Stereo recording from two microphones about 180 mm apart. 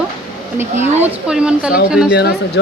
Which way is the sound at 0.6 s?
10° right (ahead or behind).